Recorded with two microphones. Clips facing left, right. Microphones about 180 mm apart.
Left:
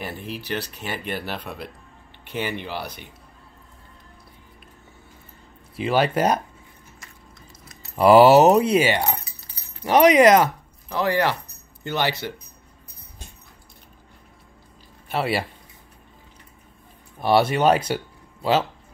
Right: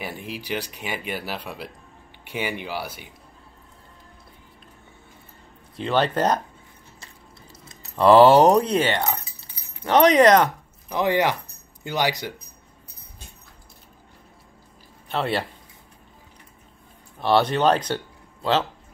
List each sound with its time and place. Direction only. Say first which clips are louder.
0.0 s speech: left 1 dB; 10° right (ahead or behind)
5.8 s speech: left 1 dB; 10° left (ahead or behind)
7.9 s speech: left 1 dB; 10° left (ahead or behind)
10.9 s speech: right 1 dB; 20° right (ahead or behind)
15.0 s speech: left 1 dB; 10° left (ahead or behind)
17.2 s speech: left 1 dB; 10° left (ahead or behind)